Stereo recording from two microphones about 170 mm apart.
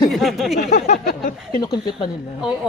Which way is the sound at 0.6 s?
45° left (ahead or behind).